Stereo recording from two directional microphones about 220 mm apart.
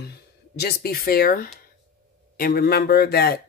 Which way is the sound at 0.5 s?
45° left (ahead or behind).